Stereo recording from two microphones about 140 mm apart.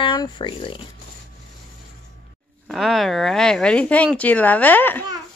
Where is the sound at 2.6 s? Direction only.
Centre (ahead or behind).